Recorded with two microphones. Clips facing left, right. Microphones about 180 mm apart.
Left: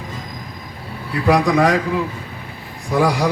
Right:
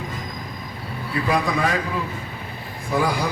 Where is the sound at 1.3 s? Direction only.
80° left.